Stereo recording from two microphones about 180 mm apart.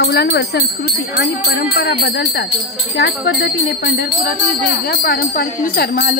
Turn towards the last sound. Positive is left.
turn(degrees=55)  # may be behind; listen again after turning